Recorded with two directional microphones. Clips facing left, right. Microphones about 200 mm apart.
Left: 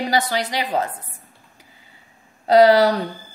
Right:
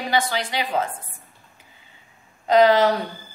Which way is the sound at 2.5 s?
35° left (ahead or behind).